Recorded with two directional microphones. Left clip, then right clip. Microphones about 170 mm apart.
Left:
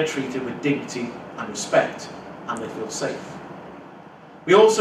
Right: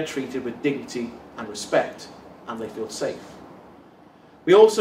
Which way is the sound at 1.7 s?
10° left (ahead or behind).